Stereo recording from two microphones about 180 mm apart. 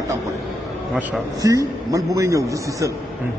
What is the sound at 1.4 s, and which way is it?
A man's voice, 20° right (ahead or behind).